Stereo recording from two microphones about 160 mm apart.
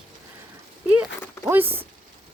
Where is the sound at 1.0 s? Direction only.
10° right (ahead or behind).